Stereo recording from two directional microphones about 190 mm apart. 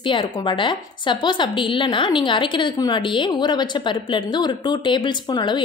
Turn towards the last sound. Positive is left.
turn(degrees=25)  # may be behind; listen again after turning